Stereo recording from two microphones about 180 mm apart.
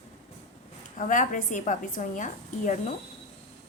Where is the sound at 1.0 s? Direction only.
45° left (ahead or behind).